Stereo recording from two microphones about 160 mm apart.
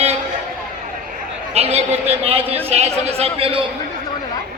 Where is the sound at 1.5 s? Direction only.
40° right (ahead or behind).